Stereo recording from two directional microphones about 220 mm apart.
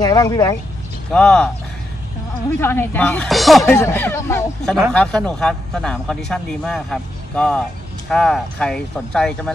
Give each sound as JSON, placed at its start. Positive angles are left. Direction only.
{"t": 0.0, "sound": "speech", "side_deg": 15}
{"t": 1.1, "sound": "speech", "side_deg": 5}
{"t": 2.6, "sound": "speech", "side_deg": 10}
{"t": 3.6, "sound": "speech", "side_deg": 10}